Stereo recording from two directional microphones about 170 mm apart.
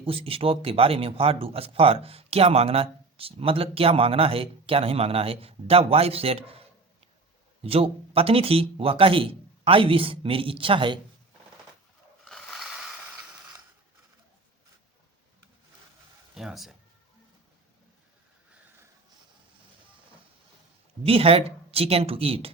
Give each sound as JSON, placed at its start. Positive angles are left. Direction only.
{"t": 0.0, "sound": "speech", "side_deg": -35}
{"t": 7.6, "sound": "speech", "side_deg": -35}
{"t": 12.2, "sound": "mechanisms", "side_deg": 0}
{"t": 16.3, "sound": "speech", "side_deg": 0}
{"t": 21.0, "sound": "speech", "side_deg": -35}